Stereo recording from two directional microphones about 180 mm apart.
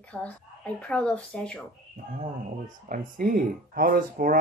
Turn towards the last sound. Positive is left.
turn(degrees=-50)  # may be behind; listen again after turning